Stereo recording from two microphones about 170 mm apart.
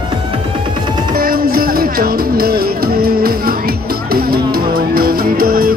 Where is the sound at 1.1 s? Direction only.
60° right (ahead or behind).